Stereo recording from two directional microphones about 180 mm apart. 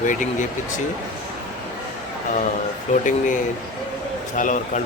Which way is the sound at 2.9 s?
45° left (ahead or behind).